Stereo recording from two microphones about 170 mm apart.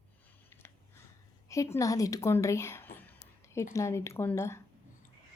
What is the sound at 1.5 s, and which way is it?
A woman's voice, 20° left (ahead or behind).